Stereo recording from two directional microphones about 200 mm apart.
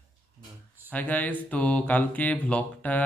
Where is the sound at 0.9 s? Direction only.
10° left (ahead or behind).